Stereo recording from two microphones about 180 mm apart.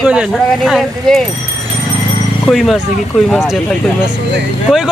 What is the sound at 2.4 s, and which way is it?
Speech, centre (ahead or behind).